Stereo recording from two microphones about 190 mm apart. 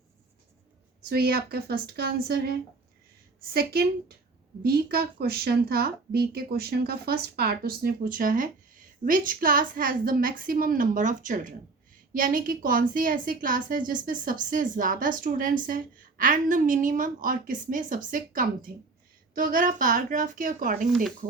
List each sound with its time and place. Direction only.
1.1 s speech: 55° right (ahead or behind)